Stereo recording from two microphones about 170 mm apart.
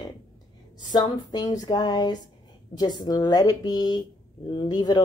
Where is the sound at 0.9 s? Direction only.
25° left (ahead or behind).